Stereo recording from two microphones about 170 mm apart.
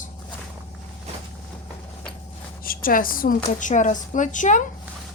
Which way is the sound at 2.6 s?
55° left (ahead or behind).